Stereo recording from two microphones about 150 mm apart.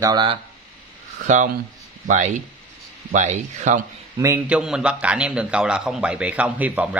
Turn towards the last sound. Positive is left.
turn(degrees=-10)  # may be behind; listen again after turning